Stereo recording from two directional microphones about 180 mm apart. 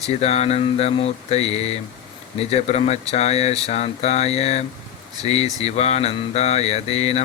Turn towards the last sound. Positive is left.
turn(degrees=35)  # may be behind; listen again after turning